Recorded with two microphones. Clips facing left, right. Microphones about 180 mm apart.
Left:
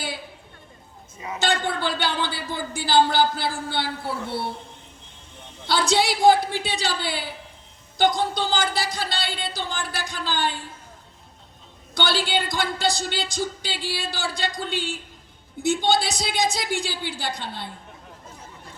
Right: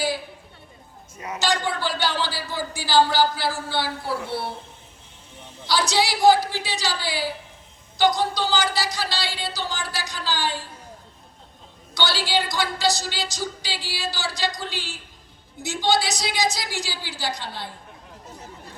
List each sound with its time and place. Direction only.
1.4 s speech: 55° left (ahead or behind)
5.6 s speech: 55° left (ahead or behind)
11.9 s speech: 55° left (ahead or behind)